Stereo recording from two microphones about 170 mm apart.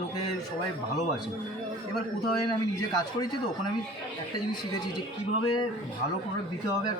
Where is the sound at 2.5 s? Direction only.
20° left (ahead or behind).